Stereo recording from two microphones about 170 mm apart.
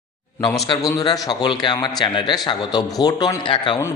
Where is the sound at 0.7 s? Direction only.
25° left (ahead or behind).